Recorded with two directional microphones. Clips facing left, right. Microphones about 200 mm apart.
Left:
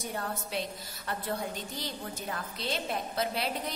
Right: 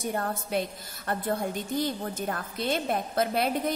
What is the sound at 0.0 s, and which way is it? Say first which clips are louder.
A woman's voice: right 5 dB; 50° right (ahead or behind).